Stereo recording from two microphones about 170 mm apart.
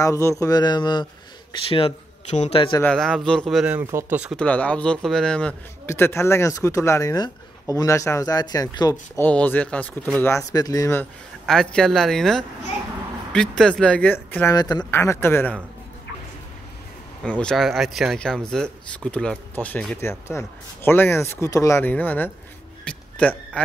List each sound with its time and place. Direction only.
0.0 s a man's voice: 15° left (ahead or behind); by 2.6 s 40° left (ahead or behind)
2.8 s speech: 5° left (ahead or behind)
4.4 s speech: 10° left (ahead or behind)
9.1 s speech: 10° left (ahead or behind)
11.4 s speech: 5° left (ahead or behind)
17.2 s speech: 5° left (ahead or behind)
22.8 s music: 5° left (ahead or behind)